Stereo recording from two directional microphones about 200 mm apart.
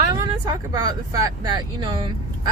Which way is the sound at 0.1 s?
20° right (ahead or behind).